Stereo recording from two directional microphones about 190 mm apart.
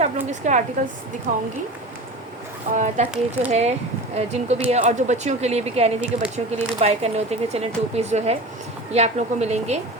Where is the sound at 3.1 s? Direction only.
5° right (ahead or behind).